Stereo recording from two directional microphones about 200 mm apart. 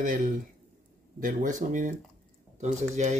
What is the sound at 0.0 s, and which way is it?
Speech, 40° right (ahead or behind).